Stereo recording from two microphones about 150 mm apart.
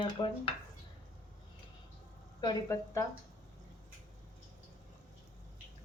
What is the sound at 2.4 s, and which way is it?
Speech, 20° left (ahead or behind).